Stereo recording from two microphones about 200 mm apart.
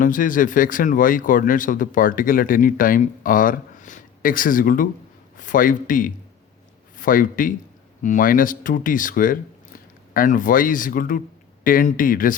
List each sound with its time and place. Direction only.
0.0 s speech: 40° left (ahead or behind)